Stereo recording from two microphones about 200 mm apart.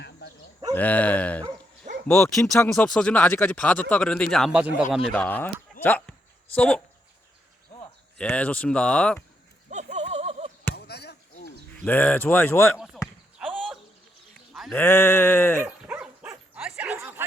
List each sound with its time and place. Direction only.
0.0 s a sound: 60° left (ahead or behind)
0.7 s speech: 10° left (ahead or behind)
5.1 s speech: 10° left (ahead or behind)
8.2 s speech: 5° left (ahead or behind)
9.6 s a sound: 35° right (ahead or behind)
10.8 s chop: 55° left (ahead or behind)
11.9 s speech: 10° left (ahead or behind)
13.4 s bird: centre (ahead or behind)
14.5 s sheep: centre (ahead or behind)
14.8 s speech: 10° left (ahead or behind)
15.5 s dog: 10° right (ahead or behind)